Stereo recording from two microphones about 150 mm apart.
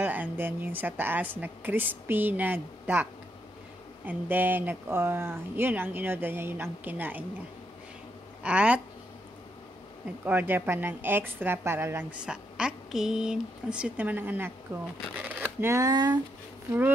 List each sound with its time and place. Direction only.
0.0 s a woman's voice: 10° right (ahead or behind)
8.4 s speech: 10° right (ahead or behind)
10.2 s a woman's voice: 15° right (ahead or behind); by 16.2 s 30° right (ahead or behind)